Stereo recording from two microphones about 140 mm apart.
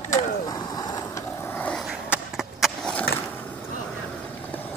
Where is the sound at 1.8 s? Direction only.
5° right (ahead or behind).